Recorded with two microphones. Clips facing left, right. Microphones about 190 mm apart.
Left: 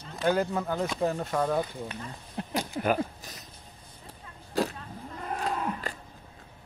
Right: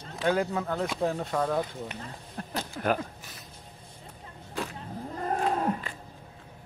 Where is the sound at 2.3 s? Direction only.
15° left (ahead or behind).